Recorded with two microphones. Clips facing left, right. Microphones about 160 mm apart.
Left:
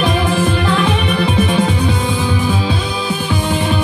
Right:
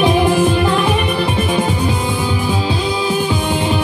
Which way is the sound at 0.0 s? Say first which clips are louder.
Right 3 dB; 10° right (ahead or behind).